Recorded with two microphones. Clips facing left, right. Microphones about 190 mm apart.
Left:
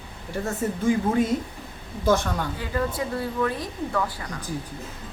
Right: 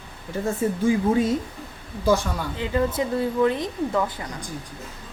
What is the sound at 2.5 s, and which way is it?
Speech, 20° right (ahead or behind).